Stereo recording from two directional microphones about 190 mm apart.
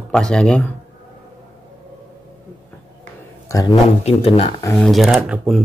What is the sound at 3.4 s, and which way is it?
Speech, 20° left (ahead or behind).